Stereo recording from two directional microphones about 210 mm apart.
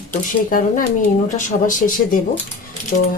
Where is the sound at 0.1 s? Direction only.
40° left (ahead or behind).